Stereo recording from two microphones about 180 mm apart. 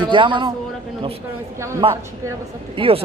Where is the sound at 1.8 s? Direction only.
30° right (ahead or behind).